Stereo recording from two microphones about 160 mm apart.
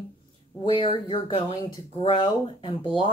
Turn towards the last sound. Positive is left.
turn(degrees=30)  # may be behind; listen again after turning